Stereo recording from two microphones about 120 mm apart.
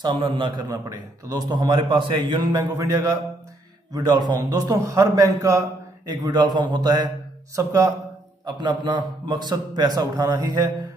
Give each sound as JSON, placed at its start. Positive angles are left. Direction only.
{"t": 0.0, "sound": "a man's voice", "side_deg": -45}
{"t": 7.5, "sound": "speech", "side_deg": -25}
{"t": 8.5, "sound": "a man's voice", "side_deg": -40}